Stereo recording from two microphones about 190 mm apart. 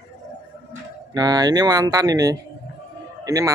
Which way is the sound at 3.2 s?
20° right (ahead or behind).